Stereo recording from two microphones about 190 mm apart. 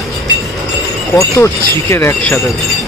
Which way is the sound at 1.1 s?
15° left (ahead or behind).